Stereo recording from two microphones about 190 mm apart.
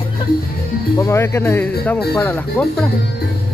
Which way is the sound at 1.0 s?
15° left (ahead or behind).